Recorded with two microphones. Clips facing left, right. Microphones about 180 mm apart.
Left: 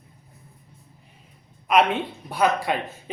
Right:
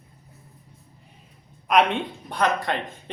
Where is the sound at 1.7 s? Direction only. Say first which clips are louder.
Even; centre (ahead or behind).